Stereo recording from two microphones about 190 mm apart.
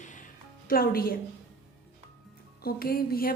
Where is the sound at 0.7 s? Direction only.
50° left (ahead or behind).